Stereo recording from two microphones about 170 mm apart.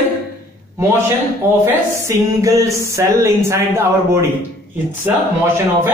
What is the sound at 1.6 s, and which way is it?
Speech, 15° right (ahead or behind).